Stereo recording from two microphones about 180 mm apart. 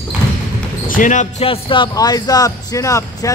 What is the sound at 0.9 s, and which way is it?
Speech, 45° left (ahead or behind).